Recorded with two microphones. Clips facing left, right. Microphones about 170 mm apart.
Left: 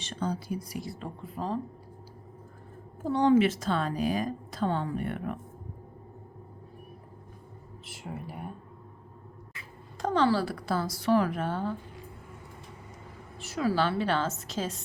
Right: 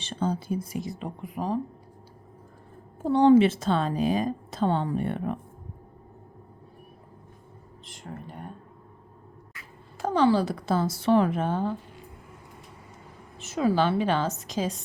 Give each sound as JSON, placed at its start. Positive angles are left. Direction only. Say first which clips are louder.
{"t": 0.0, "sound": "a woman's voice", "louder": "right 4 dB", "side_deg": -25}
{"t": 3.0, "sound": "a woman's voice", "louder": "right 5 dB", "side_deg": -30}
{"t": 7.9, "sound": "speech", "louder": "left 1 dB", "side_deg": 5}
{"t": 10.0, "sound": "a woman's voice", "louder": "right 3 dB", "side_deg": -10}
{"t": 13.4, "sound": "a woman's voice", "louder": "right 4 dB", "side_deg": -20}